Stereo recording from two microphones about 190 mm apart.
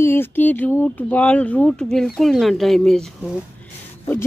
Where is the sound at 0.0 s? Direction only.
10° left (ahead or behind).